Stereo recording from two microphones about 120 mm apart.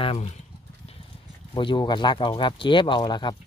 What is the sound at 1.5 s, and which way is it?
Speech, 45° left (ahead or behind).